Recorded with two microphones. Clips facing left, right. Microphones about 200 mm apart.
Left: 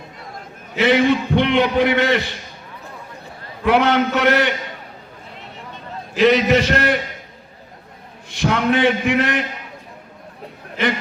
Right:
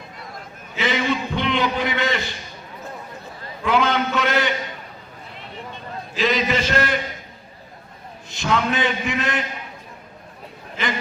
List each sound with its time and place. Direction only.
0.8 s a man's voice: 65° left (ahead or behind)
3.6 s a man's voice: 65° left (ahead or behind)
6.1 s a man's voice: 65° left (ahead or behind)
8.4 s a man's voice: 60° left (ahead or behind)